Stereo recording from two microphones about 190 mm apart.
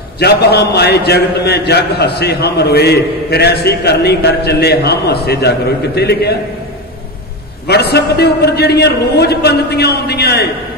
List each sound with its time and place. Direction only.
0.2 s a man's voice: 60° left (ahead or behind)
7.6 s a man's voice: 60° left (ahead or behind)